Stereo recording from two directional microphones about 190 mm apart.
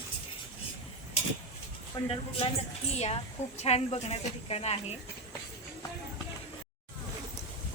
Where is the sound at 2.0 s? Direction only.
30° left (ahead or behind).